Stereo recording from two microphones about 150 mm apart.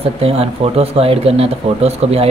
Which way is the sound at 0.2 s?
40° right (ahead or behind).